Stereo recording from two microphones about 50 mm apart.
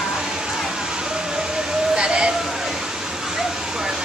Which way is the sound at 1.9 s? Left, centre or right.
Centre.